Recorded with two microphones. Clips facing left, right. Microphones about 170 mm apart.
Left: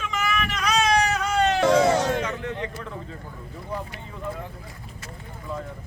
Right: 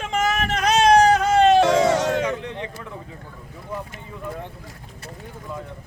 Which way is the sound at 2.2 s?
15° right (ahead or behind).